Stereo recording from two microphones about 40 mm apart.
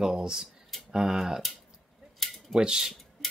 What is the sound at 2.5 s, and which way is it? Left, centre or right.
Speech, centre.